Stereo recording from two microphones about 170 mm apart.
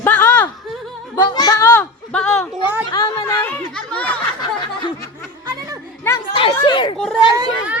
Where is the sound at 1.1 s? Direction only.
20° left (ahead or behind).